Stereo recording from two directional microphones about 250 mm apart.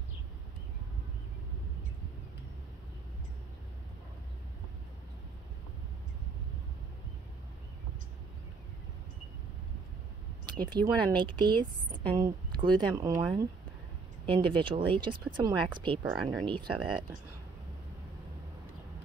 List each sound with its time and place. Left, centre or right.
10.4 s speech: centre
16.0 s speech: centre
16.4 s speech: centre